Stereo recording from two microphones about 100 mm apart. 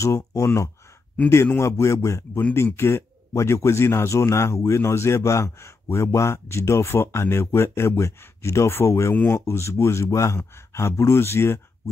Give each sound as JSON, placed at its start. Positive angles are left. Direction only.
{"t": 0.0, "sound": "speech", "side_deg": 30}
{"t": 9.1, "sound": "speech", "side_deg": 15}
{"t": 9.4, "sound": "speech", "side_deg": 30}